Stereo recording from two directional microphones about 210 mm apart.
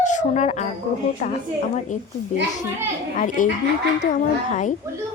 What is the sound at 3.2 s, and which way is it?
Speech, 40° left (ahead or behind).